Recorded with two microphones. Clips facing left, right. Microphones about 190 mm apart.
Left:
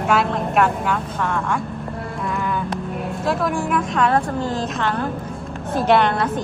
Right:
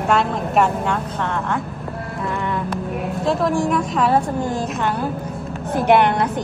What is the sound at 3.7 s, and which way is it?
A woman's voice, centre (ahead or behind).